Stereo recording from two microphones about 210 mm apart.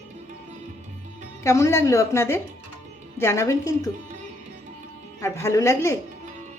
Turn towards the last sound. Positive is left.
turn(degrees=15)  # may be behind; listen again after turning